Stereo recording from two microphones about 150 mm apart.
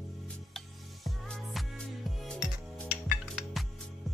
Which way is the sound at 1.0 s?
Centre (ahead or behind).